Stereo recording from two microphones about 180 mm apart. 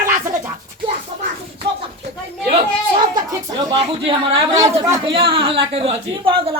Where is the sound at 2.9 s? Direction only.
25° right (ahead or behind).